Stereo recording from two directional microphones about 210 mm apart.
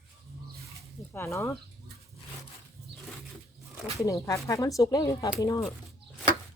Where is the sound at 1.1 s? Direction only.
15° left (ahead or behind).